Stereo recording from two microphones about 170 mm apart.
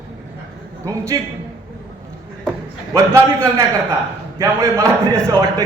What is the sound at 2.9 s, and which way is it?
A man's voice, 20° right (ahead or behind).